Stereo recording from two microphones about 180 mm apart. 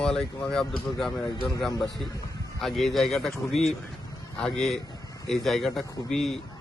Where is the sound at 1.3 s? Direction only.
25° left (ahead or behind).